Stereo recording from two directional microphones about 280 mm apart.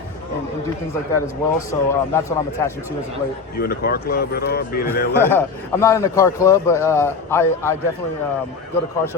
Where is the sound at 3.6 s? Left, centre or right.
Left.